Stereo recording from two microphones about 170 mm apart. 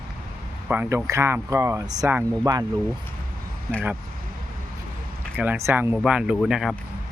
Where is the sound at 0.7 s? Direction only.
10° right (ahead or behind).